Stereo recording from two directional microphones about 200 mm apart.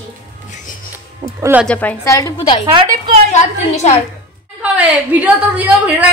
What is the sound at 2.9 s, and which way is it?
Speech, 40° right (ahead or behind).